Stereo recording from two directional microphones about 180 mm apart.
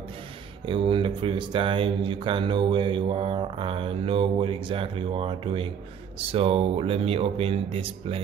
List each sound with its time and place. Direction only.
0.7 s speech: 30° right (ahead or behind)